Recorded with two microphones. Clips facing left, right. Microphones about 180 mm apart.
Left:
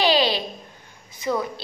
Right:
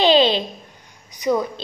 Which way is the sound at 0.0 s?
20° right (ahead or behind).